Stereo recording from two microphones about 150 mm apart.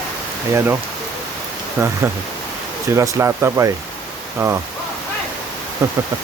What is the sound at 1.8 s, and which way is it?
Speech, 15° right (ahead or behind).